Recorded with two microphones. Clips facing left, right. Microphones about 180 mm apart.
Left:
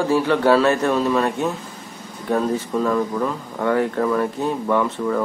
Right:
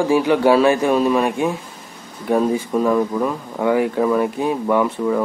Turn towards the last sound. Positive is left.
turn(degrees=-10)  # may be behind; listen again after turning